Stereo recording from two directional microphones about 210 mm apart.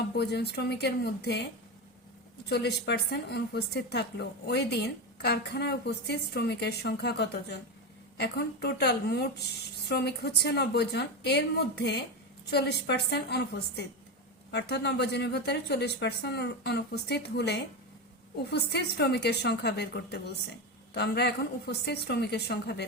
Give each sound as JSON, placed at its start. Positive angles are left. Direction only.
{"t": 0.2, "sound": "a woman's voice", "side_deg": 50}
{"t": 2.5, "sound": "a woman's voice", "side_deg": 50}